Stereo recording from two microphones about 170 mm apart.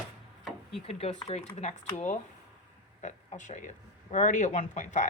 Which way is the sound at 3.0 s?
45° left (ahead or behind).